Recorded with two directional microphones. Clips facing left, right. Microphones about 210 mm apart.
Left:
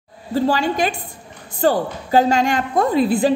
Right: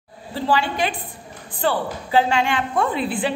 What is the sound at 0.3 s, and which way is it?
A woman's voice, 40° left (ahead or behind).